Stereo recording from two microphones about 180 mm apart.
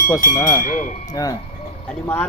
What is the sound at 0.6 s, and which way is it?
Speech, 45° left (ahead or behind).